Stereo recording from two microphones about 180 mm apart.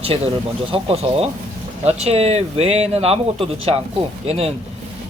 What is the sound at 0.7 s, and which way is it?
Speech, 30° right (ahead or behind).